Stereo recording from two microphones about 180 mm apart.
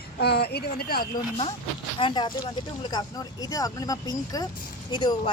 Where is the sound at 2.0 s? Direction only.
25° left (ahead or behind).